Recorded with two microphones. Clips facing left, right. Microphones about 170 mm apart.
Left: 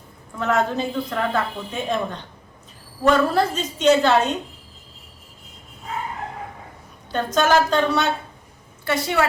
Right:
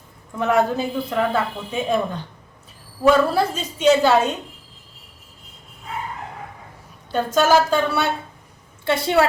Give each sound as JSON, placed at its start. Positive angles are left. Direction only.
{"t": 0.3, "sound": "speech", "side_deg": -15}
{"t": 3.0, "sound": "speech", "side_deg": -10}
{"t": 7.1, "sound": "speech", "side_deg": -5}
{"t": 8.8, "sound": "a woman's voice", "side_deg": -25}